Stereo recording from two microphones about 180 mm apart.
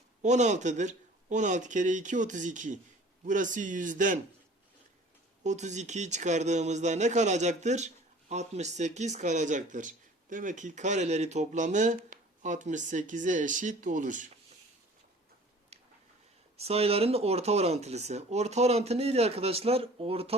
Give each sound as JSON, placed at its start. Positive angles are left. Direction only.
{"t": 0.2, "sound": "speech", "side_deg": -40}
{"t": 5.4, "sound": "speech", "side_deg": -40}
{"t": 16.6, "sound": "speech", "side_deg": -35}